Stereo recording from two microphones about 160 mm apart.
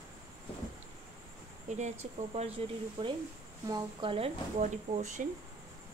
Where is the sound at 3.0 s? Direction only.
30° right (ahead or behind).